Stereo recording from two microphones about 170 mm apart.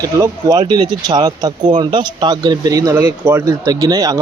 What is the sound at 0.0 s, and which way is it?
Speech, 20° right (ahead or behind).